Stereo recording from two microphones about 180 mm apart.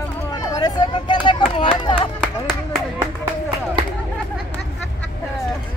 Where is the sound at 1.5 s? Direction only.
30° left (ahead or behind).